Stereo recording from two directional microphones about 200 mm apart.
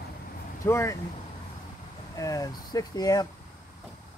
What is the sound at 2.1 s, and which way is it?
Speech, 15° left (ahead or behind).